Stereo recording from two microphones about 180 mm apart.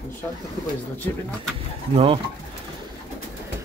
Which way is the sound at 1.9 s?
30° right (ahead or behind).